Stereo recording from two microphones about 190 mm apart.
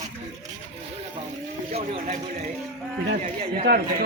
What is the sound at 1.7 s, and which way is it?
Speech, 30° right (ahead or behind).